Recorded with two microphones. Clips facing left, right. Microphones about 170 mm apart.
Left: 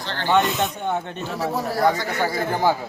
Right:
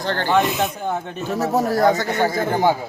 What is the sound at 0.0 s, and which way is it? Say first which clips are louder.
Speech: right 7 dB; 50° right (ahead or behind).